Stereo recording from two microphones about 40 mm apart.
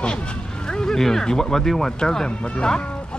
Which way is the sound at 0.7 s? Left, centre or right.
Centre.